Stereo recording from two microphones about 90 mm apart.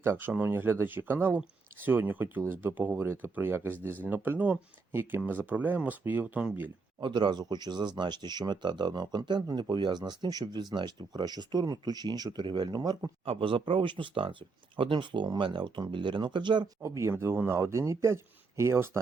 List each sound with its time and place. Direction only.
0.0 s speech: 25° right (ahead or behind)
7.0 s speech: 60° right (ahead or behind)
13.2 s speech: 80° right; by 16.6 s 60° right (ahead or behind)
16.8 s speech: 35° right (ahead or behind)